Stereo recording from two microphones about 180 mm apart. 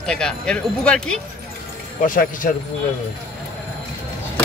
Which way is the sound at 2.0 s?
50° left (ahead or behind).